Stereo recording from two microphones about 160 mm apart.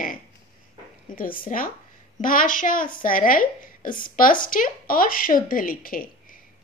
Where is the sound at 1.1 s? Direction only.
60° left (ahead or behind).